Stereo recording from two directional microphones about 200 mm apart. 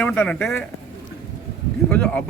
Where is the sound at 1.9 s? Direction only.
5° left (ahead or behind).